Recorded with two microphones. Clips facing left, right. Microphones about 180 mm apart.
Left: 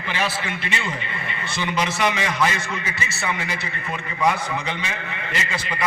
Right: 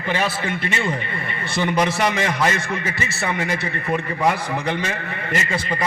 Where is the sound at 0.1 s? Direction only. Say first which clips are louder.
Right 4 dB; 45° right (ahead or behind).